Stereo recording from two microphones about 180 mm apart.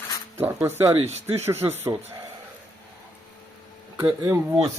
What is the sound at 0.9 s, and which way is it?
Speech, 35° right (ahead or behind).